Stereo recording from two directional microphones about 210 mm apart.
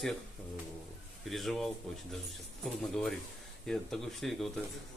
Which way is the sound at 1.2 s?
Centre (ahead or behind).